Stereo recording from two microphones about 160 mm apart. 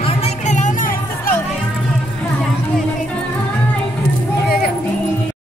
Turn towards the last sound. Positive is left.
turn(degrees=75)  # may be behind; listen again after turning